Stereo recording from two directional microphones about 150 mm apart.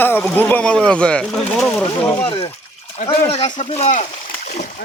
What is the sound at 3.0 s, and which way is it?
Speech, 45° left (ahead or behind).